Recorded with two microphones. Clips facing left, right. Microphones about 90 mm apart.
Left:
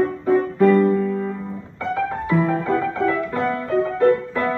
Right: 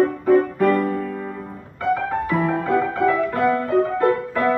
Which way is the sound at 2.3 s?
5° right (ahead or behind).